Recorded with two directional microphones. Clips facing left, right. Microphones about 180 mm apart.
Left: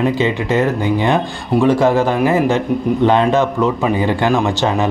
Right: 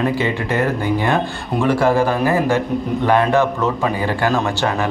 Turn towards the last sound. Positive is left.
turn(degrees=20)  # may be behind; listen again after turning